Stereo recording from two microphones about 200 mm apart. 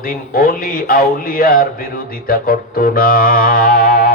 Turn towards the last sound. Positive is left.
turn(degrees=45)  # may be behind; listen again after turning